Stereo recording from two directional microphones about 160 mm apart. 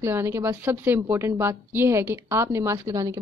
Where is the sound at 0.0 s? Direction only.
15° right (ahead or behind).